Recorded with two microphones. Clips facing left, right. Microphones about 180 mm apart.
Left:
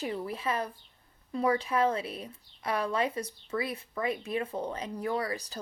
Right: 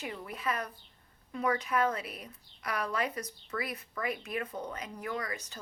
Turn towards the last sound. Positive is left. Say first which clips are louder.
# left 5 dB
turn(degrees=35)  # may be behind; listen again after turning